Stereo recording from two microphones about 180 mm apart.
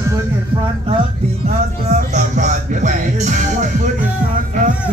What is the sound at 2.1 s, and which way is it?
Music, 45° right (ahead or behind).